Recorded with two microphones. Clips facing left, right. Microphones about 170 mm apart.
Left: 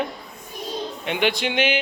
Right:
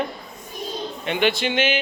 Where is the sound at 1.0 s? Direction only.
10° left (ahead or behind).